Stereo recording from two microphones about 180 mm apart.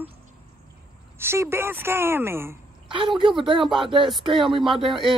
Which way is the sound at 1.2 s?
15° right (ahead or behind).